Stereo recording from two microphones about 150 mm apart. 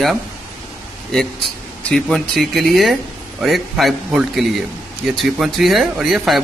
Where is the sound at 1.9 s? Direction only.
5° left (ahead or behind).